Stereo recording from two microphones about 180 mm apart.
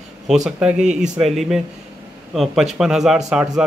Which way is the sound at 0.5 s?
5° right (ahead or behind).